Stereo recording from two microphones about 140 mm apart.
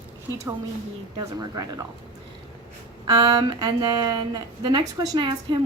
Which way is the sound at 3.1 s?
30° right (ahead or behind).